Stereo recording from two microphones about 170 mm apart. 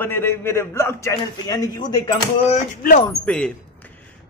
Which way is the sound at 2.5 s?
40° left (ahead or behind).